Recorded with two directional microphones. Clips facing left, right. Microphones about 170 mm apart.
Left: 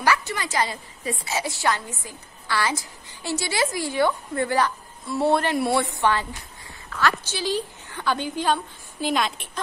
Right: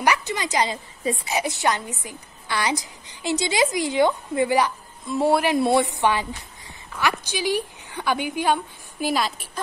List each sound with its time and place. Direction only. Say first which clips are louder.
0.0 s a woman's voice: right 1 dB; 20° right (ahead or behind)